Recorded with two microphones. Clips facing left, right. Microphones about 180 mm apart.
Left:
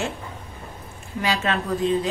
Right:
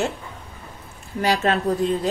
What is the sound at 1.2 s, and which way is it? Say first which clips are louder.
Speech: right 4 dB; 40° right (ahead or behind).